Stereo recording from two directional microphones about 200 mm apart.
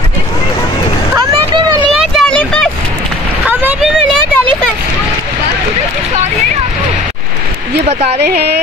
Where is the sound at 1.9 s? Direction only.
Centre (ahead or behind).